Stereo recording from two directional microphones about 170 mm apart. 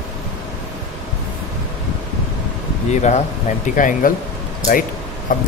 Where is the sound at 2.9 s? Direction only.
40° left (ahead or behind).